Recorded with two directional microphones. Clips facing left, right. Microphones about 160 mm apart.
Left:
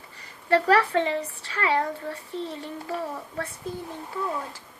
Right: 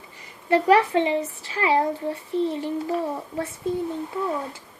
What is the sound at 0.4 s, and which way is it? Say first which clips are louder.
A woman's voice: right 3 dB; 20° right (ahead or behind).